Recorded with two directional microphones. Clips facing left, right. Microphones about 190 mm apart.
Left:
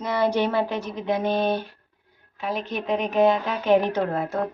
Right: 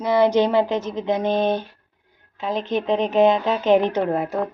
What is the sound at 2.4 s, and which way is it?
A woman's voice, 25° right (ahead or behind).